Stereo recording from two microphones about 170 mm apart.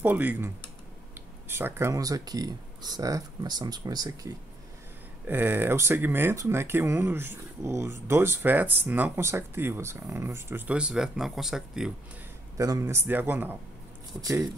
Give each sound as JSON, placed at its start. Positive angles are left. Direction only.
{"t": 0.0, "sound": "speech", "side_deg": -10}
{"t": 5.2, "sound": "speech", "side_deg": -10}
{"t": 12.5, "sound": "speech", "side_deg": -20}